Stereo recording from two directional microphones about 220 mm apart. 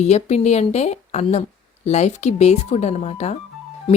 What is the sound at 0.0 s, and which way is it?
Speech, 30° left (ahead or behind).